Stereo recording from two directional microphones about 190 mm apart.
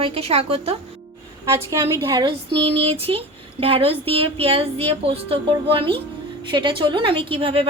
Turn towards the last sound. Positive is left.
turn(degrees=-30)  # may be behind; listen again after turning